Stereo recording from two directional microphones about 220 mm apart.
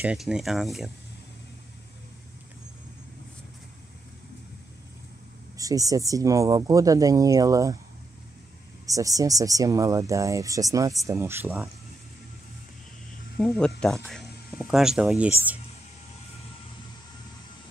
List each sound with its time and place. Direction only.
0.0 s speech: 5° right (ahead or behind)
5.6 s speech: 15° right (ahead or behind)
8.8 s speech: 15° right (ahead or behind)
13.4 s speech: centre (ahead or behind)